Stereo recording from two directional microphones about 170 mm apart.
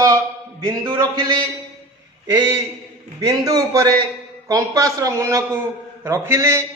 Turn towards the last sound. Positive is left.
turn(degrees=-15)  # may be behind; listen again after turning